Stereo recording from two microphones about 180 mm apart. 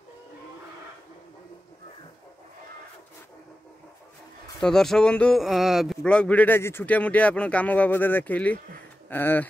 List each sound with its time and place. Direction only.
4.6 s speech: 5° left (ahead or behind)